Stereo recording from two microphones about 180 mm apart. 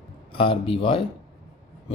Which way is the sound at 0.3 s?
30° left (ahead or behind).